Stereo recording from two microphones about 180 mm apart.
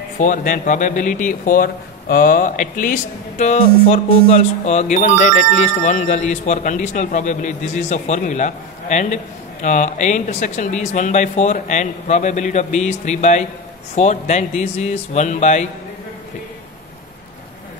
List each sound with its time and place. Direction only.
0.2 s speech: 45° left (ahead or behind)